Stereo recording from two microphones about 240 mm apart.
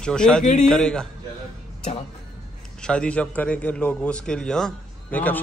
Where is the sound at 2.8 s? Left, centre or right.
Centre.